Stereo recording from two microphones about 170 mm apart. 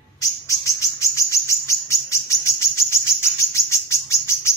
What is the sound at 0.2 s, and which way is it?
Chirp, 20° left (ahead or behind).